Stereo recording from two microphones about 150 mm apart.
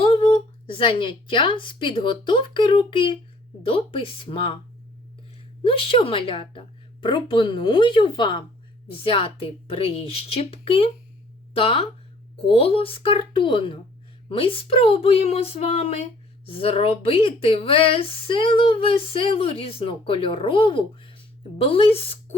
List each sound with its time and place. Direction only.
0.0 s speech: 35° left (ahead or behind)
5.6 s speech: 40° left (ahead or behind)